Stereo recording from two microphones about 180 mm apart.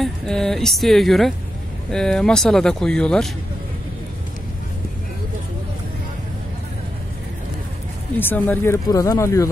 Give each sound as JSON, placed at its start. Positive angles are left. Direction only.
{"t": 0.0, "sound": "speech", "side_deg": 5}
{"t": 8.2, "sound": "speech", "side_deg": 10}